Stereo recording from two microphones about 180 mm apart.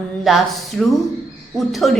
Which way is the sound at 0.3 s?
Centre (ahead or behind).